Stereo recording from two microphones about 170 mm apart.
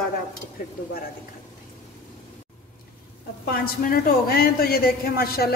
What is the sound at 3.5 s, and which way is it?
A woman's voice, 60° left (ahead or behind).